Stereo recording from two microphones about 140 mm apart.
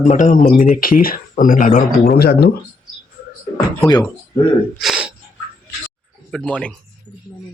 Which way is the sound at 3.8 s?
25° left (ahead or behind).